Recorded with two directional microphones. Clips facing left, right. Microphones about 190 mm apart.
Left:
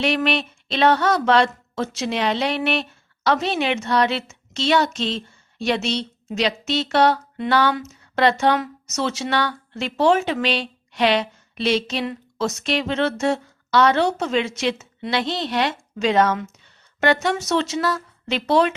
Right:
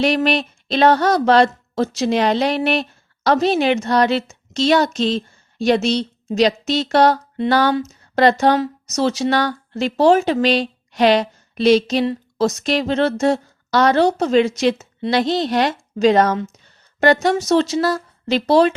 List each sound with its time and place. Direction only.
0.0 s a woman's voice: 40° right (ahead or behind)